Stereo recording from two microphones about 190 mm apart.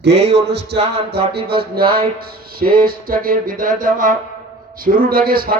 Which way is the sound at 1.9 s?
50° right (ahead or behind).